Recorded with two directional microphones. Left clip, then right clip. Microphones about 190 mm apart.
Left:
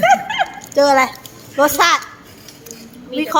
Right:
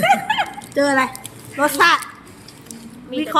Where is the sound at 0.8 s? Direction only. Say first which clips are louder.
Left 5 dB; 25° left (ahead or behind).